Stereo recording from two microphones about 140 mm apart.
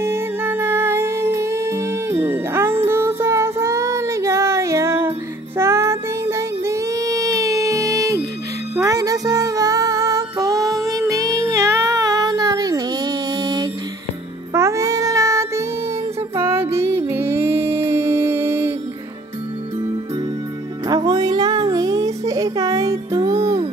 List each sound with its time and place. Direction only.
0.0 s music: 15° right (ahead or behind)
5.6 s child singing: 20° right (ahead or behind)
8.7 s music: 25° right (ahead or behind)
14.5 s child singing: 20° right (ahead or behind)
16.3 s music: 20° right (ahead or behind)
20.9 s child singing: 25° right (ahead or behind)